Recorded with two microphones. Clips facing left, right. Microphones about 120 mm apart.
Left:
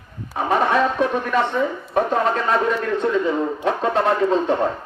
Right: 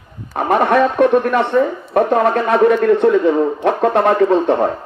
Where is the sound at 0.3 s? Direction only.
60° right (ahead or behind).